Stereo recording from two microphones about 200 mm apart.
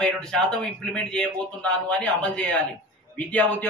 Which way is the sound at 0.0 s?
5° left (ahead or behind).